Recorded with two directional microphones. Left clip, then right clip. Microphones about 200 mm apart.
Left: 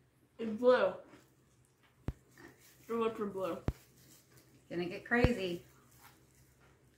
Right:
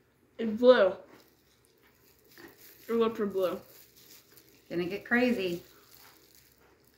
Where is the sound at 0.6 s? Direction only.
10° right (ahead or behind).